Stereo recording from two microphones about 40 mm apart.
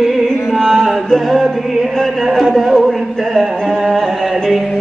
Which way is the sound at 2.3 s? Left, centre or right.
Centre.